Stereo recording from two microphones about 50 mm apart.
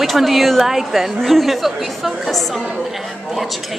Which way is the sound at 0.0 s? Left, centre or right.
Centre.